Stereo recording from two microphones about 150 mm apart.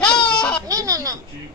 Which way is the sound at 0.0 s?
5° left (ahead or behind).